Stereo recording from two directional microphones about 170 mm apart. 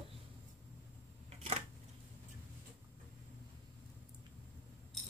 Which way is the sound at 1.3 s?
40° right (ahead or behind).